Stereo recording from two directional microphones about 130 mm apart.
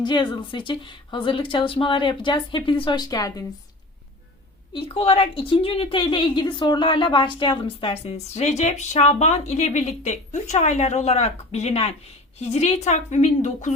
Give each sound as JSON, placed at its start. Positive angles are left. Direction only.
{"t": 0.0, "sound": "a woman's voice", "side_deg": 35}
{"t": 4.7, "sound": "a woman's voice", "side_deg": 45}